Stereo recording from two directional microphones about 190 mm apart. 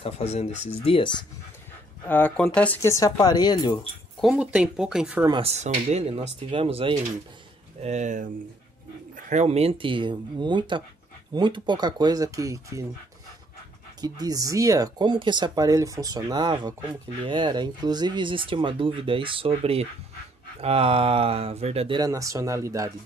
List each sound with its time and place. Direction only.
0.0 s speech: 35° left (ahead or behind)
2.0 s speech: 10° left (ahead or behind)
4.2 s speech: 5° right (ahead or behind)
5.2 s speech: 30° right (ahead or behind)
14.0 s speech: 20° right (ahead or behind)